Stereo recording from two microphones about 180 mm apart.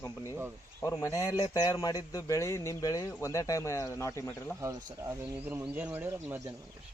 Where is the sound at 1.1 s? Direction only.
20° left (ahead or behind).